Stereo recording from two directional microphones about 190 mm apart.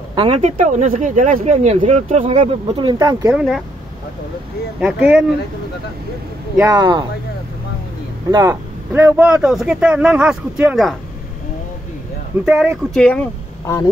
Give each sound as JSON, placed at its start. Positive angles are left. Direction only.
{"t": 0.1, "sound": "a sound", "side_deg": -25}
{"t": 0.4, "sound": "speech", "side_deg": -40}
{"t": 3.3, "sound": "speech", "side_deg": 0}
{"t": 4.7, "sound": "speech", "side_deg": -10}
{"t": 6.6, "sound": "speech", "side_deg": -20}
{"t": 8.3, "sound": "speech", "side_deg": -20}
{"t": 12.9, "sound": "speech", "side_deg": 5}